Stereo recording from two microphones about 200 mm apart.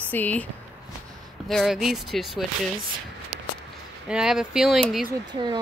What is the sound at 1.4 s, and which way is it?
Speech, centre (ahead or behind).